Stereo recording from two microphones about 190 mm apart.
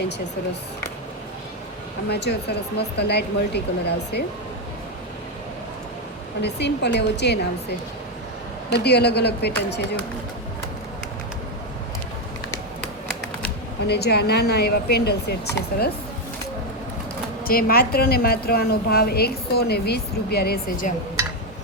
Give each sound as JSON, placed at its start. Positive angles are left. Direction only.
{"t": 2.0, "sound": "speech", "side_deg": 60}
{"t": 6.4, "sound": "speech", "side_deg": 60}
{"t": 8.8, "sound": "speech", "side_deg": 60}
{"t": 13.4, "sound": "speech", "side_deg": 60}
{"t": 17.4, "sound": "a woman's voice", "side_deg": 50}